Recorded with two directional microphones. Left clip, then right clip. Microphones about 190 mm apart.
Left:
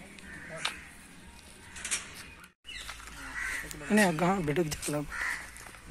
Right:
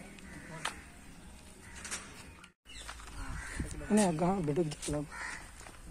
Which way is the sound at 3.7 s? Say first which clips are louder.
Left 3 dB; centre (ahead or behind).